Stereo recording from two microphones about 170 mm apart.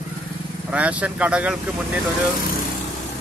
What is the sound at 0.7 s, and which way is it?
Speech, 10° right (ahead or behind).